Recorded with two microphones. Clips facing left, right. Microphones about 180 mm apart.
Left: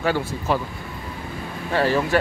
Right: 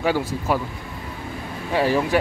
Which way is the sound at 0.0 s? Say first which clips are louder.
Right 1 dB; 10° right (ahead or behind).